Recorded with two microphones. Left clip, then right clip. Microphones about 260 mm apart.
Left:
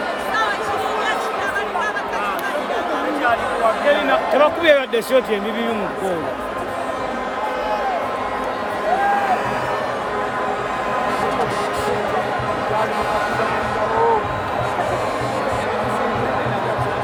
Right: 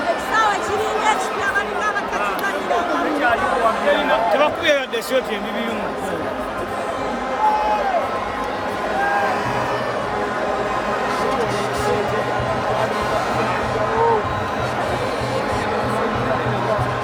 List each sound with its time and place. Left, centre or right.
4.1 s speech: left